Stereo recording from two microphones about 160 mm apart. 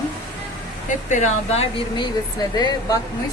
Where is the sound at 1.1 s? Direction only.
45° left (ahead or behind).